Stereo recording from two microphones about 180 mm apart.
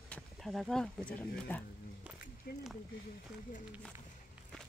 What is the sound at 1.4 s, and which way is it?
Speech, 10° left (ahead or behind).